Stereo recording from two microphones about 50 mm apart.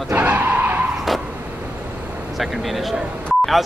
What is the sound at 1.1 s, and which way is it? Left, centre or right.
Vehicle, centre.